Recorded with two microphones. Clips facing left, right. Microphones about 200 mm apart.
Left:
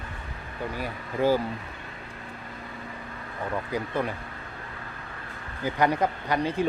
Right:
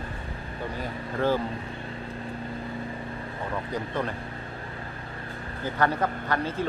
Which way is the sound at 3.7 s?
10° left (ahead or behind).